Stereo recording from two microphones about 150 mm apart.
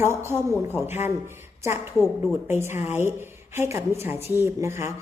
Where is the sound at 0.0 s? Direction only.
15° right (ahead or behind).